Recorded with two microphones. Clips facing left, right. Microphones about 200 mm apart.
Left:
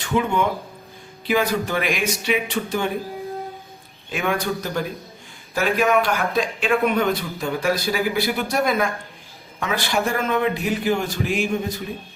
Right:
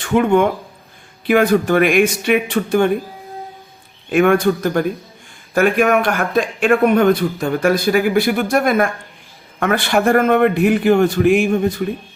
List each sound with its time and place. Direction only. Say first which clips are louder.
0.0 s a man's voice: right 7 dB; 55° right (ahead or behind)
4.1 s a man's voice: right 10 dB; 55° right (ahead or behind)